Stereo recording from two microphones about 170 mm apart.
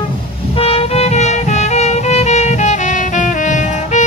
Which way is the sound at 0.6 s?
35° left (ahead or behind).